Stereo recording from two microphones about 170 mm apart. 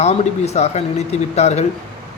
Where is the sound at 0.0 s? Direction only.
40° left (ahead or behind).